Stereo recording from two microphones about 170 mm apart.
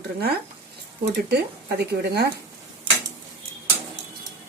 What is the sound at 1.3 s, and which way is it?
Speech, 75° right (ahead or behind).